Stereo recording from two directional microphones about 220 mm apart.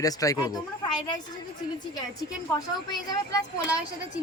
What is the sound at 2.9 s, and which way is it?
Speech, 20° left (ahead or behind).